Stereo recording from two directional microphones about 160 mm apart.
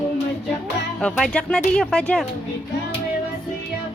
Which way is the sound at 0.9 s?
5° left (ahead or behind).